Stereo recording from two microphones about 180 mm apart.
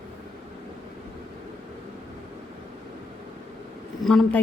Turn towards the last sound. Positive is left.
turn(degrees=0)  # may be behind; listen again after turning